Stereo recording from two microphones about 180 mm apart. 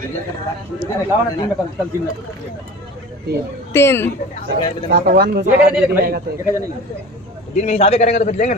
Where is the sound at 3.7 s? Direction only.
15° left (ahead or behind).